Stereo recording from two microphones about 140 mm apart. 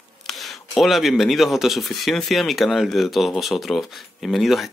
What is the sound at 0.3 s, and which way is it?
Speech, centre (ahead or behind).